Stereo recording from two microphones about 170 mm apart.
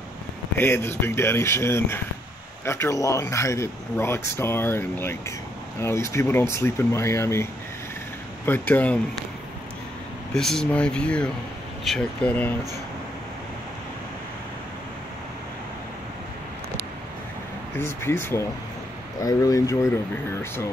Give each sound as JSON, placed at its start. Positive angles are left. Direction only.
{"t": 0.6, "sound": "speech", "side_deg": 15}
{"t": 8.5, "sound": "speech", "side_deg": 10}
{"t": 10.3, "sound": "speech", "side_deg": 5}
{"t": 17.7, "sound": "speech", "side_deg": 15}